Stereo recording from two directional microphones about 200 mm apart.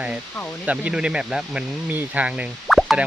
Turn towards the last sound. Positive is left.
turn(degrees=0)  # may be behind; listen again after turning